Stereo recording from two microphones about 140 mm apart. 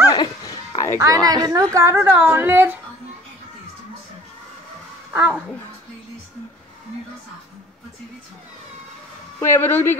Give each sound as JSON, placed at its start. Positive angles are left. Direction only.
{"t": 0.1, "sound": "a sound", "side_deg": 25}
{"t": 0.9, "sound": "a woman's voice", "side_deg": -25}
{"t": 5.1, "sound": "speech", "side_deg": -10}
{"t": 9.4, "sound": "a woman's voice", "side_deg": 15}